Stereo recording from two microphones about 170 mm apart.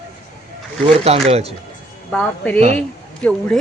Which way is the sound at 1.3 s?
35° right (ahead or behind).